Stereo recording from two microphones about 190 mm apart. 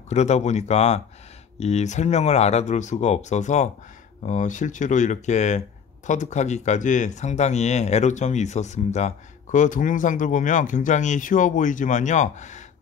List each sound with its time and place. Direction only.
0.1 s speech: 35° left (ahead or behind)